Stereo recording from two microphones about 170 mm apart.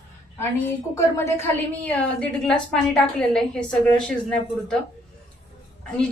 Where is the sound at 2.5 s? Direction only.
5° left (ahead or behind).